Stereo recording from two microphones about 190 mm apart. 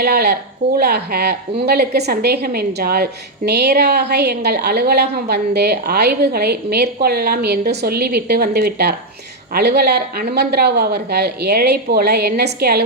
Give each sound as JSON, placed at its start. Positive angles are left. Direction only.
{"t": 0.0, "sound": "a woman's voice", "side_deg": -55}